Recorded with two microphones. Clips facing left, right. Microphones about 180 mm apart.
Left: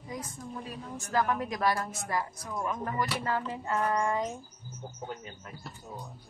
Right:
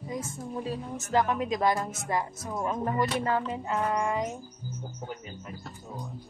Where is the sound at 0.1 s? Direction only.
25° right (ahead or behind).